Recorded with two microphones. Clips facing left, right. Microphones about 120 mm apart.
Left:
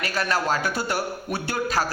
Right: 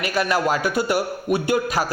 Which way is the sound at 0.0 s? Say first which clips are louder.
Right 4 dB; 15° right (ahead or behind).